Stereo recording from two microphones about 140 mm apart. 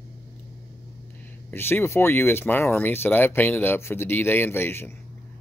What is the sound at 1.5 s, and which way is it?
Speech, 15° left (ahead or behind).